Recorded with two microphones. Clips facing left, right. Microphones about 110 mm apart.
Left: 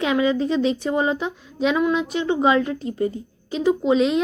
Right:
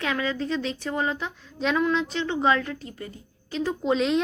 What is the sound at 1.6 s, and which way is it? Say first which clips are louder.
Speech: left 4 dB; 5° left (ahead or behind).